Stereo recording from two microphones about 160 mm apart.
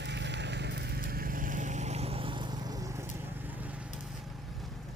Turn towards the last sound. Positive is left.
turn(degrees=-15)  # may be behind; listen again after turning